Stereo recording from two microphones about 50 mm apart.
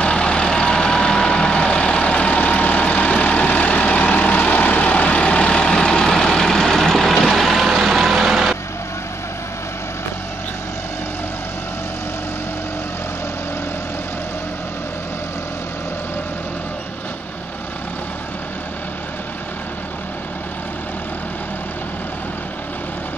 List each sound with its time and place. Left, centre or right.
0.0 s vehicle: left; by 8.5 s centre